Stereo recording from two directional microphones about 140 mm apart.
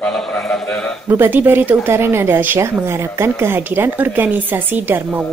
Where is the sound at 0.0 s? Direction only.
5° left (ahead or behind).